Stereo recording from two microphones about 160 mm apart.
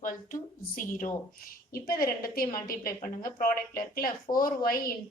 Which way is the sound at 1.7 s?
70° left (ahead or behind).